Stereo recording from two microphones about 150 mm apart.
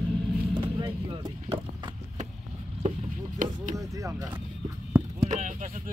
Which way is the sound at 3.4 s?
60° right (ahead or behind).